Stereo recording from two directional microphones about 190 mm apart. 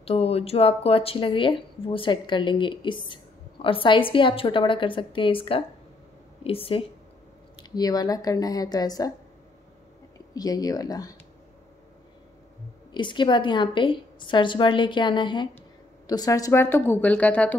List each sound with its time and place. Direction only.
0.0 s speech: 30° left (ahead or behind)
10.3 s speech: 20° left (ahead or behind)
12.9 s a woman's voice: 25° left (ahead or behind); by 17.6 s 10° left (ahead or behind)